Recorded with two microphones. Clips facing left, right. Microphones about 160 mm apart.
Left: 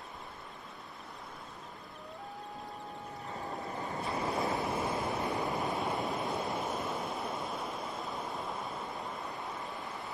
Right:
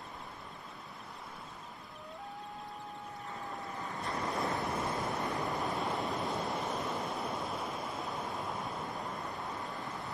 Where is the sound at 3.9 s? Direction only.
5° left (ahead or behind).